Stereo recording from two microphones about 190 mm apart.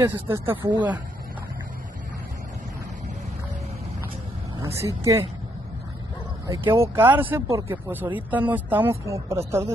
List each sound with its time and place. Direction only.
0.0 s speech: 10° right (ahead or behind)
0.6 s speech: 25° right (ahead or behind)
4.8 s speech: 15° right (ahead or behind)
6.4 s speech: 15° right (ahead or behind)